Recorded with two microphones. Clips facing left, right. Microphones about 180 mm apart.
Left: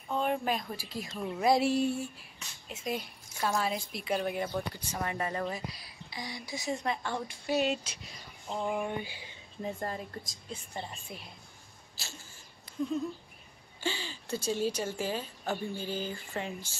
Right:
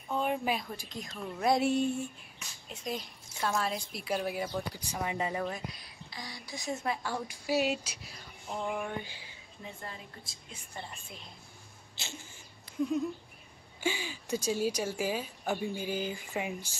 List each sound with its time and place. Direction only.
0.1 s a sound: 5° right (ahead or behind)
0.7 s a woman's voice: 5° left (ahead or behind); by 5.5 s 10° right (ahead or behind)
6.0 s speech: 15° left (ahead or behind)
6.7 s a woman's voice: 5° right (ahead or behind)
8.6 s speech: 10° left (ahead or behind)
9.6 s a woman's voice: 45° left (ahead or behind)
10.5 s a woman's voice: 25° left (ahead or behind)
13.7 s speech: 10° right (ahead or behind)